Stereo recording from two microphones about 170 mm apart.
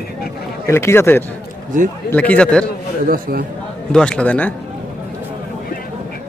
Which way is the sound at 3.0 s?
55° right (ahead or behind).